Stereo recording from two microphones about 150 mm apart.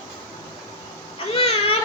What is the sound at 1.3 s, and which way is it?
Speech, 40° left (ahead or behind).